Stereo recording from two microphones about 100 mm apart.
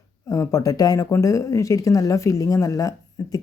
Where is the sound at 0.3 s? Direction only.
35° left (ahead or behind).